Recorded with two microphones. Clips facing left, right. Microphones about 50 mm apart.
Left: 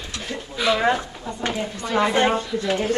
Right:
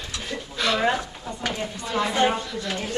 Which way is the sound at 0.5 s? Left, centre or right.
Centre.